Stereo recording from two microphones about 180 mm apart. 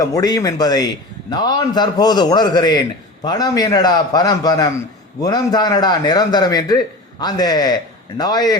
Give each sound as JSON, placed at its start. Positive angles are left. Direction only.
{"t": 0.0, "sound": "a man's voice", "side_deg": 20}